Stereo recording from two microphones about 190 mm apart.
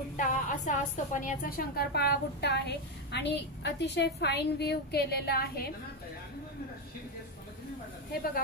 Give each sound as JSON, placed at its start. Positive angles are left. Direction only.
{"t": 0.2, "sound": "a woman's voice", "side_deg": 40}